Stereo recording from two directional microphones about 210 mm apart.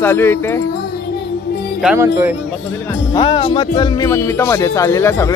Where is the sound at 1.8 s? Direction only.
5° right (ahead or behind).